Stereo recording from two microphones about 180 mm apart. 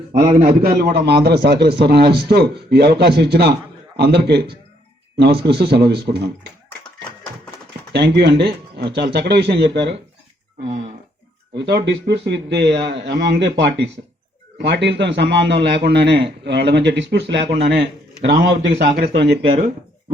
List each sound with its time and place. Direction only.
0.4 s a man's voice: 55° right (ahead or behind)
7.9 s a man's voice: 65° right (ahead or behind)
11.5 s a man's voice: 70° right (ahead or behind)
18.4 s a man's voice: 55° right (ahead or behind)